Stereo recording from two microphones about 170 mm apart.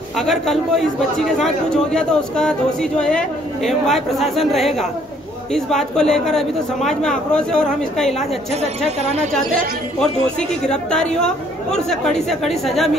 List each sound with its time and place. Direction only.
0.2 s speech: centre (ahead or behind)
8.5 s speech: 40° right (ahead or behind)
10.7 s speech: 5° left (ahead or behind)